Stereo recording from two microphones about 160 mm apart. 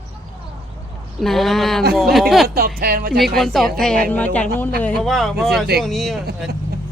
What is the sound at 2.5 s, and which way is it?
Speech, 70° right (ahead or behind).